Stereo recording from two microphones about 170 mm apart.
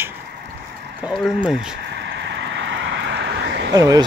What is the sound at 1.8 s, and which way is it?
Vehicle, 90° right.